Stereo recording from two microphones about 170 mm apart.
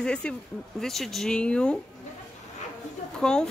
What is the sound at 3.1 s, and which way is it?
Speech, 5° left (ahead or behind).